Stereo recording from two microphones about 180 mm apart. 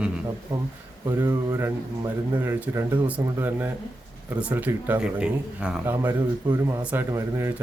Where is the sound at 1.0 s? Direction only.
15° right (ahead or behind).